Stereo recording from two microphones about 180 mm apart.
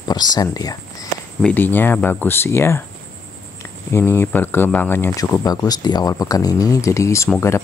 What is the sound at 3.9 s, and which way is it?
Speech, 10° left (ahead or behind).